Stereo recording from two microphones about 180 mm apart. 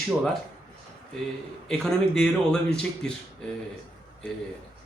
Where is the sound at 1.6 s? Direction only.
5° left (ahead or behind).